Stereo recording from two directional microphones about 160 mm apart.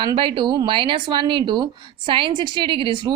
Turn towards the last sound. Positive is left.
turn(degrees=-30)  # may be behind; listen again after turning